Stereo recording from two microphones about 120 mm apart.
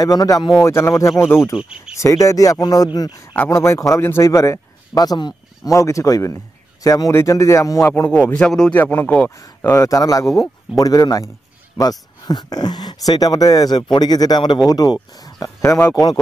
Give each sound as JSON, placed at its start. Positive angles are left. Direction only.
{"t": 0.0, "sound": "a man's voice", "side_deg": 30}
{"t": 0.7, "sound": "a man's voice", "side_deg": 20}
{"t": 1.6, "sound": "speech", "side_deg": -10}
{"t": 2.0, "sound": "a man's voice", "side_deg": 25}
{"t": 9.4, "sound": "a man's voice", "side_deg": 25}